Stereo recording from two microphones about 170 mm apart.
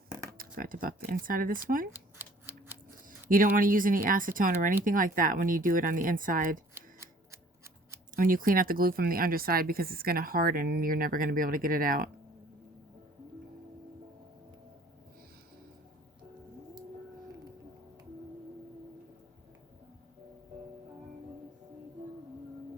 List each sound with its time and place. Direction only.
0.3 s speech: 55° right (ahead or behind)
1.9 s scissors: 10° right (ahead or behind)
3.2 s speech: 55° right (ahead or behind)
6.7 s camera: 15° right (ahead or behind)
8.1 s speech: 55° right (ahead or behind)